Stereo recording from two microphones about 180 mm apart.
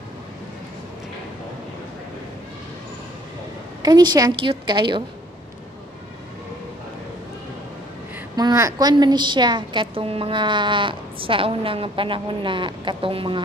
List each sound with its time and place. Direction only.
3.8 s a woman's voice: 25° right (ahead or behind)
8.4 s a woman's voice: 20° right (ahead or behind)